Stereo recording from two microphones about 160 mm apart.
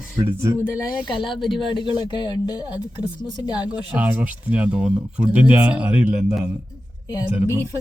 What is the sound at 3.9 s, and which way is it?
Speech, 10° right (ahead or behind).